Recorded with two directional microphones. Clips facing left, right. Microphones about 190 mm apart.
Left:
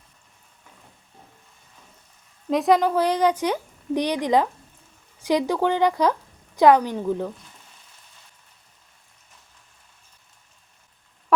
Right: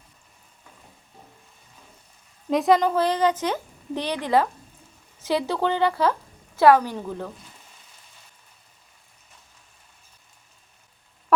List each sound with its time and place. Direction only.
2.5 s a woman's voice: centre (ahead or behind)
2.9 s speech: 15° left (ahead or behind)